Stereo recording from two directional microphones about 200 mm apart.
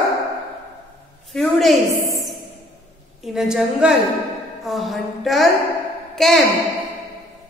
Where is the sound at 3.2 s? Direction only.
5° right (ahead or behind).